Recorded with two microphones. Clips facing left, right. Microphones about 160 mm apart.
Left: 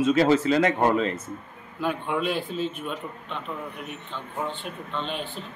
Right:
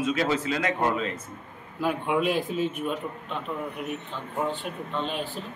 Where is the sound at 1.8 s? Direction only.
5° right (ahead or behind).